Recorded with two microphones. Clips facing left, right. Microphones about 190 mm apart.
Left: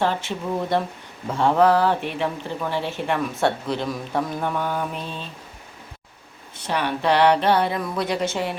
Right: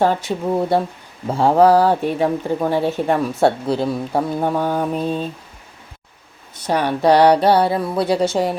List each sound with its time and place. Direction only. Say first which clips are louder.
0.0 s speech: right 6 dB; 40° right (ahead or behind)
6.6 s speech: right 6 dB; 45° right (ahead or behind)